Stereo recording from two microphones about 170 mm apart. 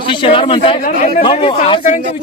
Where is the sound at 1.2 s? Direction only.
30° left (ahead or behind).